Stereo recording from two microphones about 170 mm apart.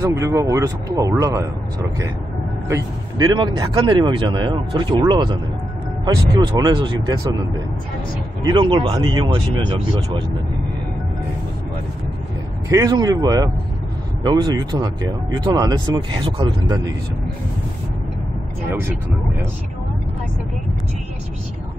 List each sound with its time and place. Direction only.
0.0 s speech: 15° right (ahead or behind)
8.5 s speech: 30° right (ahead or behind)
12.6 s speech: 20° right (ahead or behind)